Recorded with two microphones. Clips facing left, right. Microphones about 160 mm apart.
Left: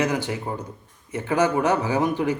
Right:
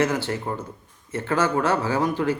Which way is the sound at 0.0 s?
15° left (ahead or behind).